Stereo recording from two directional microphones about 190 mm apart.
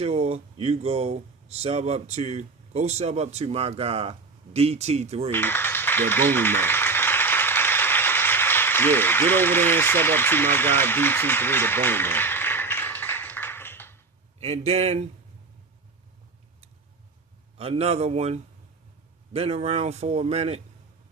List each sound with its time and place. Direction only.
0.0 s speech: 35° right (ahead or behind)
5.3 s a sound: 10° left (ahead or behind)
14.4 s speech: 35° right (ahead or behind)
17.6 s speech: 30° right (ahead or behind)